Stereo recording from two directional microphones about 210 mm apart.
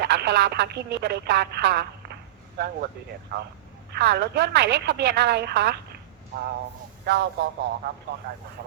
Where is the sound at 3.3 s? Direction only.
50° right (ahead or behind).